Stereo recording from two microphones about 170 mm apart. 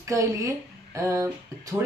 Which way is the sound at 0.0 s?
20° right (ahead or behind).